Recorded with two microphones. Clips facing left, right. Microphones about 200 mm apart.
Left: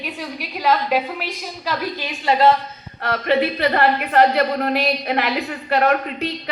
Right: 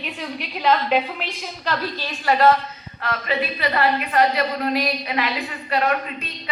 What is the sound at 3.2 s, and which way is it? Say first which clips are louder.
A woman's voice: left 7 dB; 60° left (ahead or behind).